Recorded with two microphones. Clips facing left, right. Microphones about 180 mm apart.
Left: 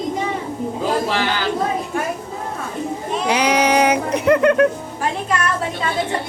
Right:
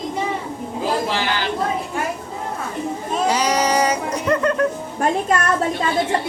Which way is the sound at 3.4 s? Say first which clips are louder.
Left 6 dB; 60° left (ahead or behind).